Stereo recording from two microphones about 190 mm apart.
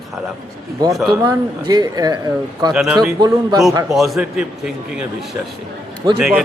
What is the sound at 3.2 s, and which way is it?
Speech, 20° right (ahead or behind).